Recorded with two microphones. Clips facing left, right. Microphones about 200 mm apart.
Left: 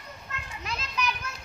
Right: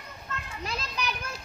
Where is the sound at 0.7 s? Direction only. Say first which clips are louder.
Left 2 dB; 30° right (ahead or behind).